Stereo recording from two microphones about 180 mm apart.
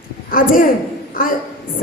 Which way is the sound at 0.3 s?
55° left (ahead or behind).